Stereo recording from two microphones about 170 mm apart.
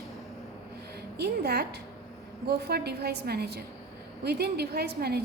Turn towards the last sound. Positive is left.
turn(degrees=-70)  # may be behind; listen again after turning